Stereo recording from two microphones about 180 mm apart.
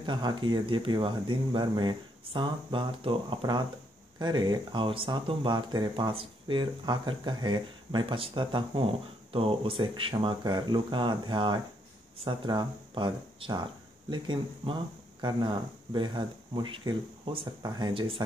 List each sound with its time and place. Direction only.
0.0 s speech: 25° right (ahead or behind)